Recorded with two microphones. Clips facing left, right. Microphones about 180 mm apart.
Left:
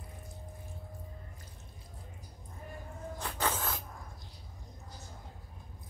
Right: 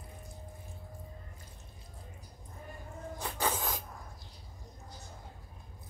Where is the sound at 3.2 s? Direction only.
10° right (ahead or behind).